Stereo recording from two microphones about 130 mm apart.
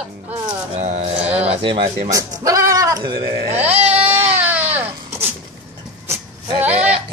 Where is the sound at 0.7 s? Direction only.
60° right (ahead or behind).